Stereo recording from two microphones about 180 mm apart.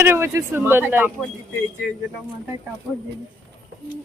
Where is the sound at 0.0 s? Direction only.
15° right (ahead or behind).